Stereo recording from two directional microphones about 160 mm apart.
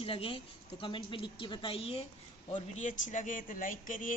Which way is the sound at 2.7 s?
50° left (ahead or behind).